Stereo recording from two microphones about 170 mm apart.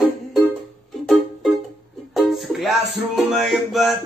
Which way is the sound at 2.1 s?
Centre (ahead or behind).